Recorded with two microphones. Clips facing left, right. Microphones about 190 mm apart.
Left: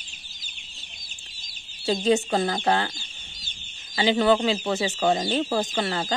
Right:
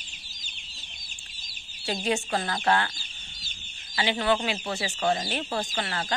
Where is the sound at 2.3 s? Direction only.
25° left (ahead or behind).